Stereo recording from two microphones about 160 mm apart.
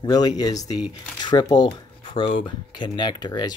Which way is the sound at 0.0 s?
25° left (ahead or behind).